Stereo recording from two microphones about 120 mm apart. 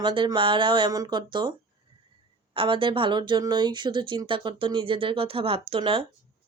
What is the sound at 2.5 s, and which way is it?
Speech, 45° right (ahead or behind).